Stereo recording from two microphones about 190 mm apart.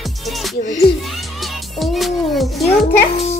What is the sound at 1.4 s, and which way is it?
Music, centre (ahead or behind).